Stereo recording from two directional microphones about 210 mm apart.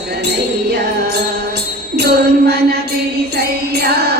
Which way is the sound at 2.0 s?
50° right (ahead or behind).